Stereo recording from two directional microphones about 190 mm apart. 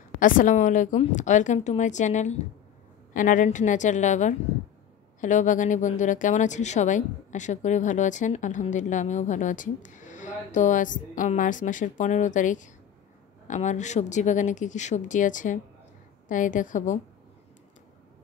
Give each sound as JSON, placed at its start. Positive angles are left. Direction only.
{"t": 0.2, "sound": "a woman's voice", "side_deg": 45}